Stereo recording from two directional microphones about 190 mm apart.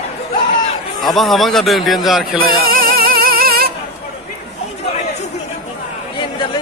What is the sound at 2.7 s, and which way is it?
Music, 50° right (ahead or behind).